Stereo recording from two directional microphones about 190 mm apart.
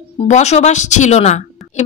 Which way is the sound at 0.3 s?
35° left (ahead or behind).